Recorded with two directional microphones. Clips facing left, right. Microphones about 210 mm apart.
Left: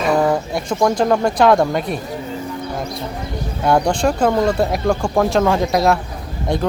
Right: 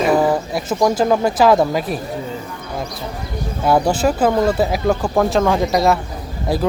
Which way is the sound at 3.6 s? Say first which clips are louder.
Even; 5° right (ahead or behind).